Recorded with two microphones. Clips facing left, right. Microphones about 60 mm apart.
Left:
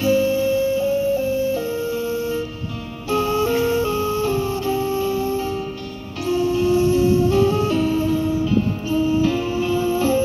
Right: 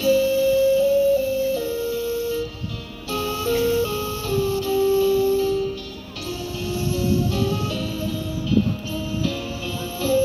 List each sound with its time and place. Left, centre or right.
0.0 s music: left